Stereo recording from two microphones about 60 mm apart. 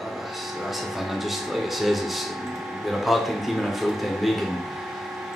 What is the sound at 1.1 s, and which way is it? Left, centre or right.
Speech, centre.